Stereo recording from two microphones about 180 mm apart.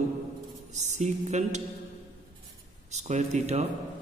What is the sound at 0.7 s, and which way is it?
Speech, 40° right (ahead or behind).